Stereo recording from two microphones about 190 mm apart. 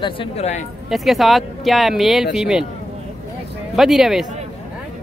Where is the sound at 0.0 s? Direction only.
30° left (ahead or behind).